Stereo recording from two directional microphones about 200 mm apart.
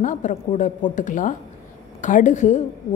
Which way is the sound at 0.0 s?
40° left (ahead or behind).